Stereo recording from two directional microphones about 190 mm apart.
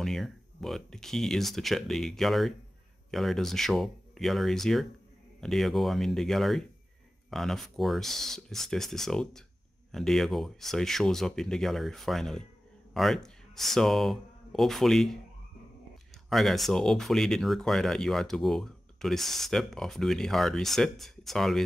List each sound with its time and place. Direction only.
0.0 s speech: centre (ahead or behind)
16.3 s speech: centre (ahead or behind)